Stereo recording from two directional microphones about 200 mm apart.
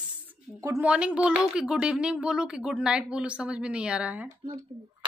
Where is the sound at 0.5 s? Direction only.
15° right (ahead or behind).